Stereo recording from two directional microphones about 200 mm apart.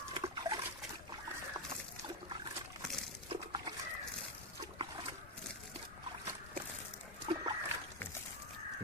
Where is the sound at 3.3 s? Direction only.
25° right (ahead or behind).